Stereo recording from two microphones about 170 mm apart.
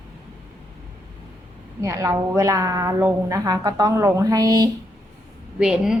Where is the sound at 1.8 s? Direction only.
20° right (ahead or behind).